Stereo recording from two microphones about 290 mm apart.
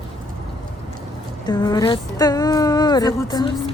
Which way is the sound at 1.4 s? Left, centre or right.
Centre.